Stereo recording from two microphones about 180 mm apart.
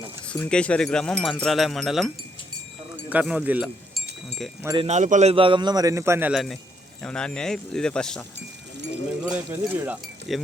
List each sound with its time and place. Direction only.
0.3 s speech: 5° left (ahead or behind)
4.8 s a man's voice: 40° right (ahead or behind); by 8.2 s 5° left (ahead or behind)
9.2 s speech: 10° right (ahead or behind)